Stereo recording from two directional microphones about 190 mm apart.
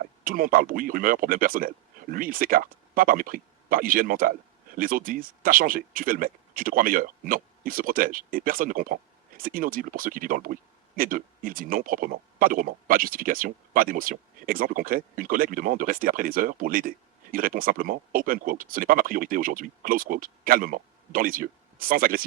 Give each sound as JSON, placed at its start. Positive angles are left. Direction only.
{"t": 0.0, "sound": "speech", "side_deg": -50}